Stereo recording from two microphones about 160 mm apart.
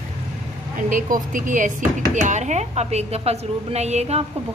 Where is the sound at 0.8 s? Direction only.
55° right (ahead or behind).